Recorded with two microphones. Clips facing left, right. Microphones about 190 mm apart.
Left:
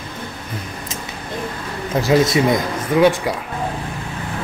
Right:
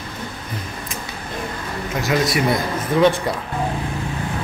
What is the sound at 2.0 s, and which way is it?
Speech, 25° left (ahead or behind).